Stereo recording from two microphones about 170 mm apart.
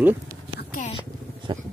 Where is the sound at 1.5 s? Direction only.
25° right (ahead or behind).